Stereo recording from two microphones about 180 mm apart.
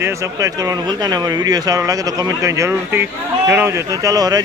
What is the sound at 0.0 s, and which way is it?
Speech, 15° right (ahead or behind).